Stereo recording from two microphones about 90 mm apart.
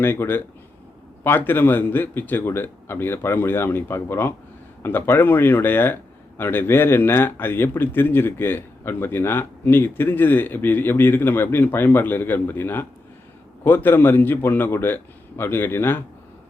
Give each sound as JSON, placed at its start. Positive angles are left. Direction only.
{"t": 0.0, "sound": "speech", "side_deg": 25}